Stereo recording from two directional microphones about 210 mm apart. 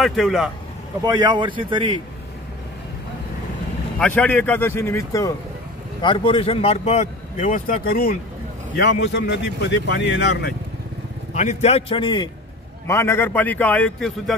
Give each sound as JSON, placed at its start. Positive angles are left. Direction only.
{"t": 0.0, "sound": "a man's voice", "side_deg": 0}
{"t": 1.0, "sound": "a man's voice", "side_deg": -20}
{"t": 4.0, "sound": "a man's voice", "side_deg": 5}
{"t": 11.3, "sound": "a man's voice", "side_deg": 30}